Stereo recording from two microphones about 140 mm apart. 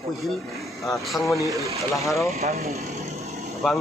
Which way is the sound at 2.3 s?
50° right (ahead or behind).